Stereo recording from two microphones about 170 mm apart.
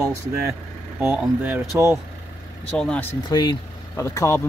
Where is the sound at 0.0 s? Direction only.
20° right (ahead or behind).